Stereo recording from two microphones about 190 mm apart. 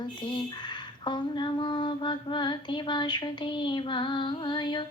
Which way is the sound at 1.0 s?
25° left (ahead or behind).